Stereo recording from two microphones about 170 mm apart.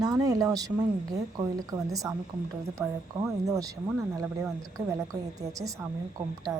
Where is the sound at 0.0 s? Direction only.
20° right (ahead or behind).